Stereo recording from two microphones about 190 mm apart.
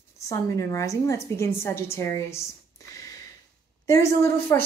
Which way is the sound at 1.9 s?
15° left (ahead or behind).